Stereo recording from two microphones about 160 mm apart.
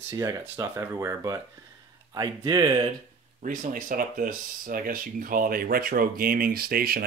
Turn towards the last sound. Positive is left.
turn(degrees=-70)  # may be behind; listen again after turning